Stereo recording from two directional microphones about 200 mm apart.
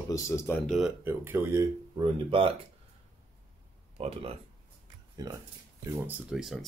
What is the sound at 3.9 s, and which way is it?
Speech, 30° right (ahead or behind).